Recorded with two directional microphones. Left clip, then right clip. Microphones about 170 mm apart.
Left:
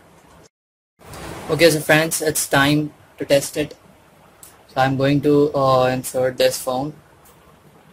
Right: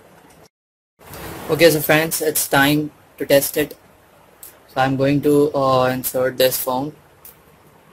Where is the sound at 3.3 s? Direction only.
25° right (ahead or behind).